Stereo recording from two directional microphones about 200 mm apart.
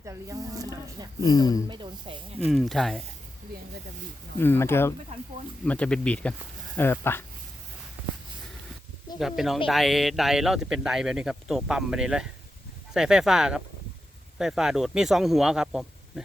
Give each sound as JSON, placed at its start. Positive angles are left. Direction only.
{"t": 0.0, "sound": "speech", "side_deg": -15}
{"t": 1.2, "sound": "speech", "side_deg": 20}
{"t": 1.6, "sound": "speech", "side_deg": -25}
{"t": 2.5, "sound": "speech", "side_deg": 0}
{"t": 4.4, "sound": "speech", "side_deg": 10}
{"t": 9.1, "sound": "speech", "side_deg": 0}